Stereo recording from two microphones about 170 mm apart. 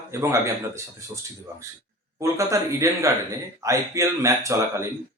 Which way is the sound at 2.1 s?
15° right (ahead or behind).